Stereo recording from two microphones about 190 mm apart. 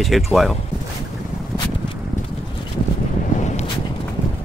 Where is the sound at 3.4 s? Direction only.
35° left (ahead or behind).